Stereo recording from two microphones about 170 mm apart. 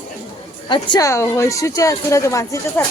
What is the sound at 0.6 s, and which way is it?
A woman's voice, 25° left (ahead or behind).